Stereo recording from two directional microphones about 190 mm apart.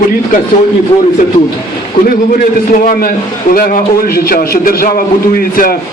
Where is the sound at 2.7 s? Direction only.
45° left (ahead or behind).